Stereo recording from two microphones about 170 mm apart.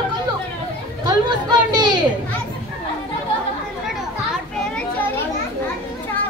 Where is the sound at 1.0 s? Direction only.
25° right (ahead or behind).